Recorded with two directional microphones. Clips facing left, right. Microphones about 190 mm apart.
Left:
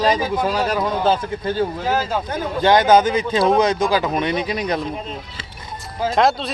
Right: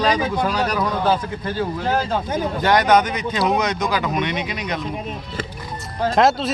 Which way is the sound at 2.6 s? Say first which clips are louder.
Left 3 dB; 25° left (ahead or behind).